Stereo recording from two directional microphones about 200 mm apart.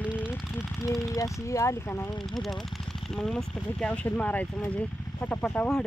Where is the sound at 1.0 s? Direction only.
15° left (ahead or behind).